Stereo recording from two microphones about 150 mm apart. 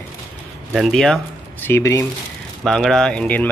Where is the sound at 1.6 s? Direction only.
15° left (ahead or behind).